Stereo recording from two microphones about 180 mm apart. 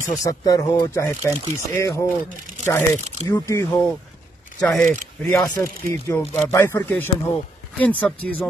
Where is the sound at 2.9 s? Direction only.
35° right (ahead or behind).